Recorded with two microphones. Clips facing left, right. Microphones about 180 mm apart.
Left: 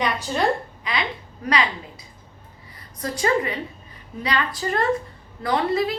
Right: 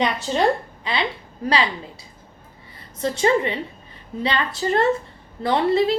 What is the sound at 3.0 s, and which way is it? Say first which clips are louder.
A woman's voice: right 3 dB; 25° right (ahead or behind).